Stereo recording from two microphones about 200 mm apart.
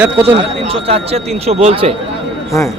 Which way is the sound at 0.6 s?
30° right (ahead or behind).